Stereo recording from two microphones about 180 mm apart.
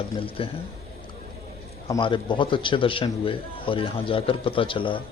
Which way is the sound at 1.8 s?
25° left (ahead or behind).